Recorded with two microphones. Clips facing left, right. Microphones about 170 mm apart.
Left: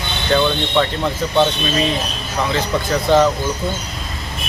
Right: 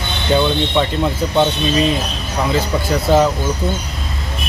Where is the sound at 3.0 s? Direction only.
5° right (ahead or behind).